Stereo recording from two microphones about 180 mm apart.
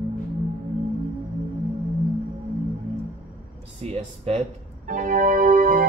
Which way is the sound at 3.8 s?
35° right (ahead or behind).